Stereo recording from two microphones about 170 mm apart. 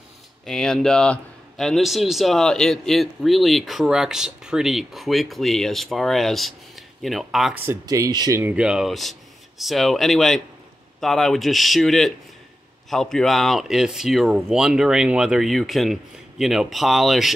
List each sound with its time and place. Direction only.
0.5 s a man's voice: 5° left (ahead or behind)
7.6 s speech: 15° right (ahead or behind)
8.4 s a man's voice: 10° right (ahead or behind)